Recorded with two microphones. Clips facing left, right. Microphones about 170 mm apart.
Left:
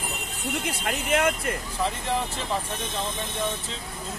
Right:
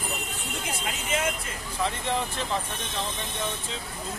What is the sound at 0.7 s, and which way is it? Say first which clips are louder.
Speech: left 4 dB; 65° left (ahead or behind).